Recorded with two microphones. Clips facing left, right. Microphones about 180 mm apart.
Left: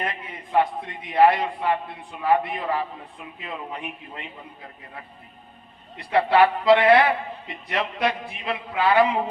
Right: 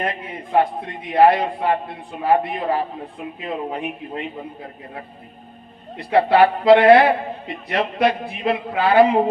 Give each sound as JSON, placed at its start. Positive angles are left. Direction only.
{"t": 0.0, "sound": "a man's voice", "side_deg": -45}
{"t": 6.1, "sound": "a man's voice", "side_deg": -40}